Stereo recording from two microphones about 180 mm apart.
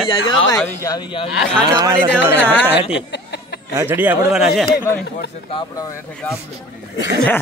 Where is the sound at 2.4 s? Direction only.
10° left (ahead or behind).